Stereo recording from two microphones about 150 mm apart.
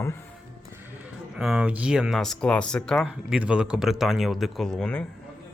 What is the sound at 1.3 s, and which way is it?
Speech, 5° right (ahead or behind).